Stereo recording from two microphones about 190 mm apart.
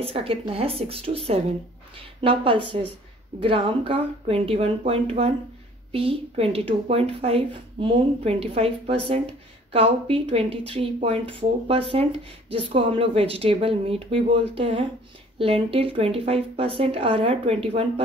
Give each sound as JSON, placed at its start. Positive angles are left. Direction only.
{"t": 0.0, "sound": "a woman's voice", "side_deg": -30}